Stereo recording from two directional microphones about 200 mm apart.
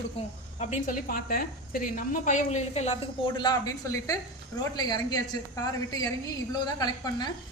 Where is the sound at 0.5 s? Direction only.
40° left (ahead or behind).